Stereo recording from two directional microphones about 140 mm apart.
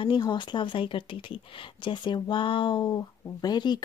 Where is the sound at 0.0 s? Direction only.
35° left (ahead or behind).